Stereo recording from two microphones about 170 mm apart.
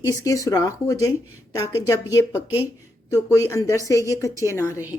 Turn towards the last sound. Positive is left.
turn(degrees=15)  # may be behind; listen again after turning